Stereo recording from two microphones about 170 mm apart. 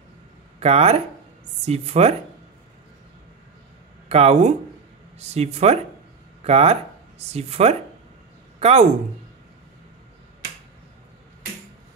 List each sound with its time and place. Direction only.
0.6 s speech: 35° right (ahead or behind)
4.1 s a woman's voice: 40° right (ahead or behind)